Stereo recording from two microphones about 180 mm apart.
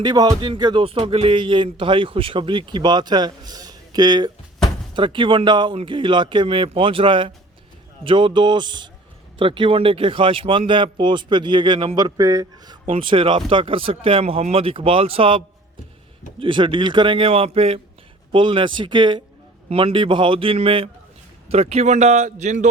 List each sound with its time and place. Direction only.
0.0 s speech: 20° right (ahead or behind); by 22.7 s 40° right (ahead or behind)